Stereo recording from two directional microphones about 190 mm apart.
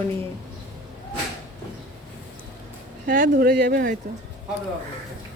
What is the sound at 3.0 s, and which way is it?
Speech, 45° right (ahead or behind).